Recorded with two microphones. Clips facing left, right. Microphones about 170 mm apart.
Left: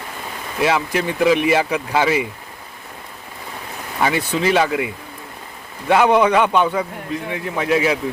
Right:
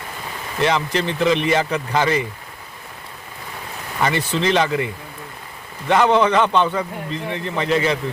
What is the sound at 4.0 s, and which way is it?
Speech, 10° left (ahead or behind).